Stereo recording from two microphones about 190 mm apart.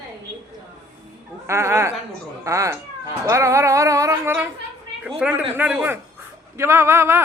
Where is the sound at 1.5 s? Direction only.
15° right (ahead or behind).